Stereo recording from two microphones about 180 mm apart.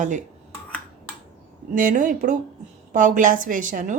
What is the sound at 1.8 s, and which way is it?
A woman's voice, 45° right (ahead or behind).